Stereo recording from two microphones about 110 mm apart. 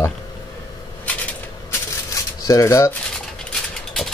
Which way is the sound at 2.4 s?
30° left (ahead or behind).